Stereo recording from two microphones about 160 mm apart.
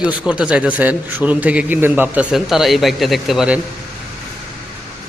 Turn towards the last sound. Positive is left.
turn(degrees=0)  # may be behind; listen again after turning